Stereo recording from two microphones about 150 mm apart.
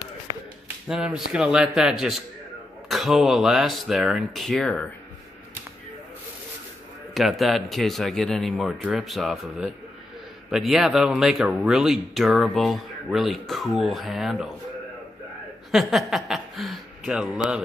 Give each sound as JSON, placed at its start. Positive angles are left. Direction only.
{"t": 0.8, "sound": "speech", "side_deg": -5}
{"t": 7.2, "sound": "speech", "side_deg": 0}
{"t": 15.7, "sound": "speech", "side_deg": 0}